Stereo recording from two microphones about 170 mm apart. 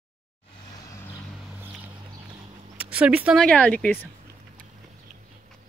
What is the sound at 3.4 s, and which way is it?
Speech, 5° left (ahead or behind).